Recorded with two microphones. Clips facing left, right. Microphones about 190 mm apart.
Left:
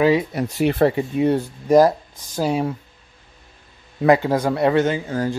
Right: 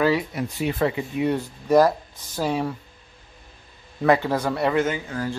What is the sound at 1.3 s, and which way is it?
Speech, 20° left (ahead or behind).